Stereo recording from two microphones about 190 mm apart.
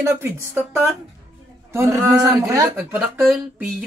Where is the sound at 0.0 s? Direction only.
15° right (ahead or behind).